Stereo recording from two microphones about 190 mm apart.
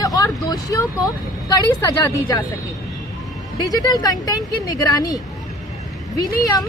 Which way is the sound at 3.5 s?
20° left (ahead or behind).